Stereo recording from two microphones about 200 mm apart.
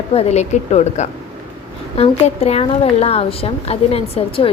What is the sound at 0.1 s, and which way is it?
A woman's voice, 30° left (ahead or behind).